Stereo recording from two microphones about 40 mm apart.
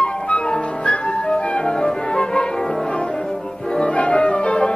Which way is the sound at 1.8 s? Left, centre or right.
Left.